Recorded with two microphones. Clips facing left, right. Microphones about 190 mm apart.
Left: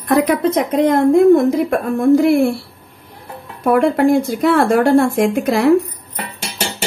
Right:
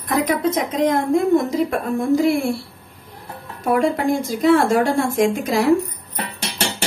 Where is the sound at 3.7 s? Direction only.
60° left (ahead or behind).